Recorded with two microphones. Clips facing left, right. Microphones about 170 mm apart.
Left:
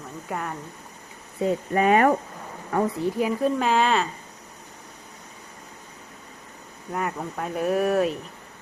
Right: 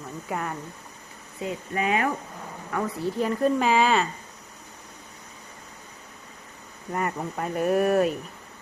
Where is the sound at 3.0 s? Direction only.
5° left (ahead or behind).